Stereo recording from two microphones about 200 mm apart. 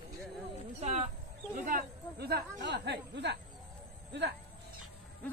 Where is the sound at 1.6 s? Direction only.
45° right (ahead or behind).